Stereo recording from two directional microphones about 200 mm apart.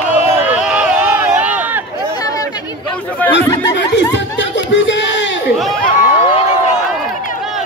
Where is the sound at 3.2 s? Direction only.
10° left (ahead or behind).